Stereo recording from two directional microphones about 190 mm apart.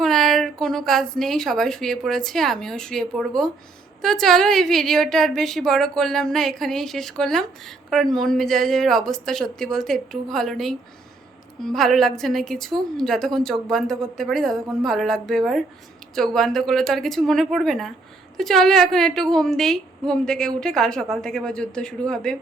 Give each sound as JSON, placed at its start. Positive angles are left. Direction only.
{"t": 0.0, "sound": "a woman's voice", "side_deg": 0}